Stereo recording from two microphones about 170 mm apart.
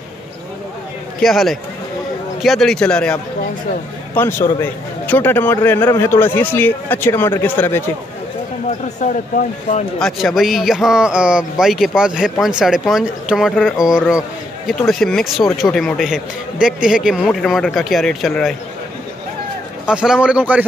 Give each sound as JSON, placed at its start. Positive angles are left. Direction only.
{"t": 1.2, "sound": "a man's voice", "side_deg": 0}
{"t": 8.6, "sound": "speech", "side_deg": 45}
{"t": 9.9, "sound": "a man's voice", "side_deg": 0}
{"t": 19.9, "sound": "speech", "side_deg": -5}